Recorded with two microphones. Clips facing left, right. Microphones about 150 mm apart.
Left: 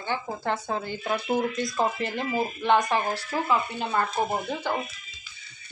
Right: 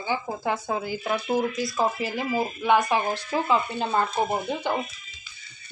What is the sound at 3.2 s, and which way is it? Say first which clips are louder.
Speech: right 2 dB; 20° right (ahead or behind).